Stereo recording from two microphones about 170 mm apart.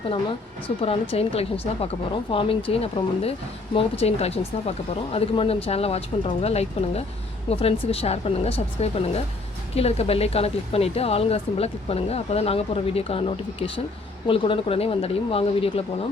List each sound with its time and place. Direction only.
1.1 s speech: 35° left (ahead or behind)